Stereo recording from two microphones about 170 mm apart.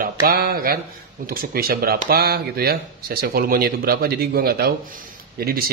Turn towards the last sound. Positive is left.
turn(degrees=-60)  # may be behind; listen again after turning